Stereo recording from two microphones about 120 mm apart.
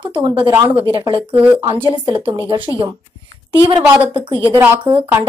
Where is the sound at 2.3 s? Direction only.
45° right (ahead or behind).